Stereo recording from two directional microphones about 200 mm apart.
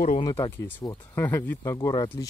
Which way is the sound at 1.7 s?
25° left (ahead or behind).